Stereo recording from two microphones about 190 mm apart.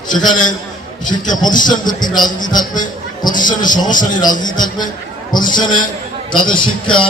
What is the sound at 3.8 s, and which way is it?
Speech, 45° left (ahead or behind).